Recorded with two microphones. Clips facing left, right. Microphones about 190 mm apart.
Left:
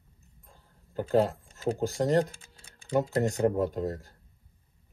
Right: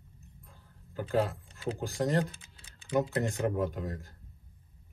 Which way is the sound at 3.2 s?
40° left (ahead or behind).